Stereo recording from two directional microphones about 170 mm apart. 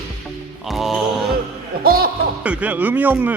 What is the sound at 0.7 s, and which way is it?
Speech, centre (ahead or behind).